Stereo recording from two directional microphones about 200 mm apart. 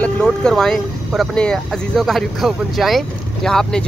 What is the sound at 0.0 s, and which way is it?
Speech, 5° left (ahead or behind).